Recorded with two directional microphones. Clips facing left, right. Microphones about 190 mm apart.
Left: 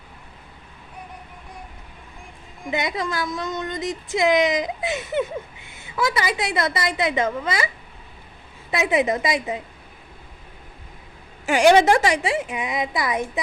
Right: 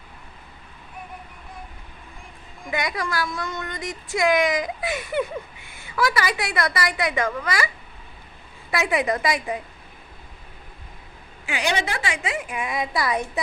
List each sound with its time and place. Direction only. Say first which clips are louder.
2.6 s speech: left 2 dB; 20° left (ahead or behind)
8.7 s speech: left 2 dB; 20° left (ahead or behind)
11.4 s speech: left 11 dB; 50° left (ahead or behind); by 13.4 s 20° left (ahead or behind)